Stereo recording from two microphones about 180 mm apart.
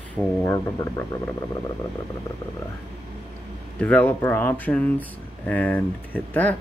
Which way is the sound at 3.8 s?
10° left (ahead or behind).